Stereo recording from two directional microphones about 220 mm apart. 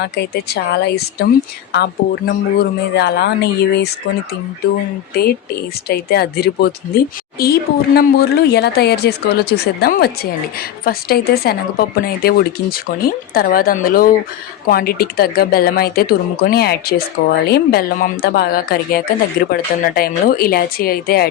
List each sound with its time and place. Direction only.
0.0 s speech: 45° left (ahead or behind)
5.9 s a woman's voice: 45° left (ahead or behind)